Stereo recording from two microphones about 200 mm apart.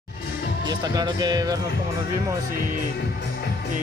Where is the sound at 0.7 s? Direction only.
20° right (ahead or behind).